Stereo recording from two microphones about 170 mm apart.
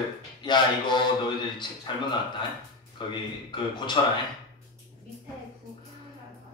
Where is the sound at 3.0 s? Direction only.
30° left (ahead or behind).